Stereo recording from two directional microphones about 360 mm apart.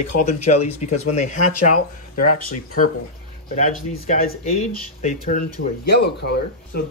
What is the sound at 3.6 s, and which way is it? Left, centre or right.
Speech, centre.